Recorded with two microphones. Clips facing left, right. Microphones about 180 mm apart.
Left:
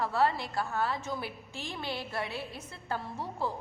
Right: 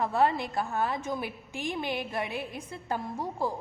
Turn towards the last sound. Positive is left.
turn(degrees=-15)  # may be behind; listen again after turning